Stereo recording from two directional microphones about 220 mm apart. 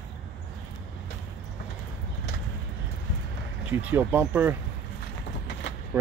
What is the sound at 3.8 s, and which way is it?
Speech, 10° right (ahead or behind).